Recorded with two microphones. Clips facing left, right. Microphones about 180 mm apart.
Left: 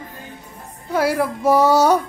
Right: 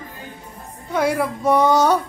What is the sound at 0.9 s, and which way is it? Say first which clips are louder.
Speech: left 1 dB; 5° left (ahead or behind).